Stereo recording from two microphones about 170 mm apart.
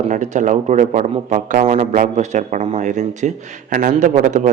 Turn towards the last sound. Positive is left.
turn(degrees=-45)  # may be behind; listen again after turning